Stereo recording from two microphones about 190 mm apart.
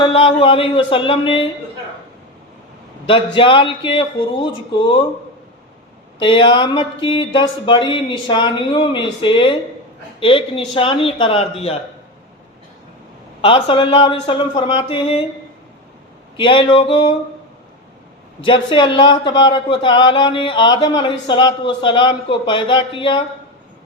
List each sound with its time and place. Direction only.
0.0 s speech: 30° left (ahead or behind)
3.3 s speech: 25° left (ahead or behind)
6.1 s speech: 25° left (ahead or behind)
13.4 s speech: 30° left (ahead or behind)
16.4 s speech: 25° left (ahead or behind)
18.4 s speech: 25° left (ahead or behind)